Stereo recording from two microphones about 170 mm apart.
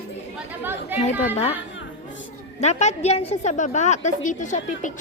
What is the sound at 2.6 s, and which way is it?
A woman's voice, 40° left (ahead or behind).